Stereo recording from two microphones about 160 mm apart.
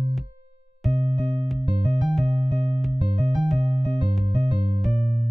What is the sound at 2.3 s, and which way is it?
Music, 40° right (ahead or behind).